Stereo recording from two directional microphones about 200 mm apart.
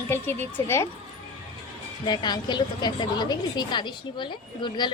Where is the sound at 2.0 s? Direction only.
20° left (ahead or behind).